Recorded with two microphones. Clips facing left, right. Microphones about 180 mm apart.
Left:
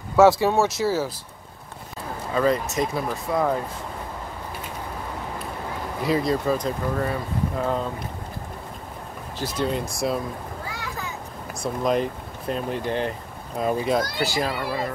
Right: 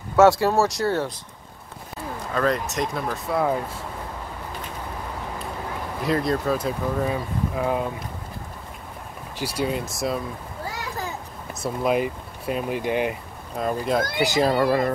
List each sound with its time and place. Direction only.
0.1 s speech: centre (ahead or behind)
2.3 s speech: centre (ahead or behind)
6.0 s speech: centre (ahead or behind)
9.4 s speech: 10° right (ahead or behind)
11.6 s speech: 5° right (ahead or behind)
13.6 s speech: 5° left (ahead or behind)
14.1 s speech: 20° right (ahead or behind)
14.4 s speech: 45° right (ahead or behind)